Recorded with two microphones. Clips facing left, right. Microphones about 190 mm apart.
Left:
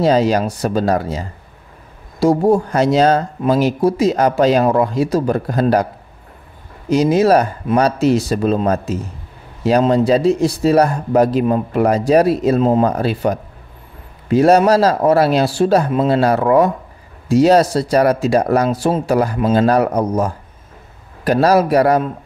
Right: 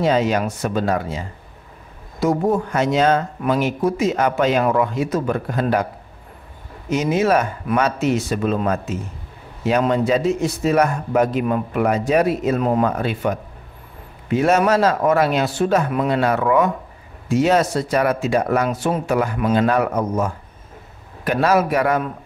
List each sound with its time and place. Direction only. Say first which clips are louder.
0.0 s a man's voice: left 4 dB; 35° left (ahead or behind)
6.9 s a man's voice: left 5 dB; 35° left (ahead or behind)